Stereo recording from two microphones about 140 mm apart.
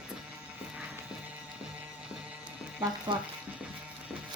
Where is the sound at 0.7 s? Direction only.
10° right (ahead or behind).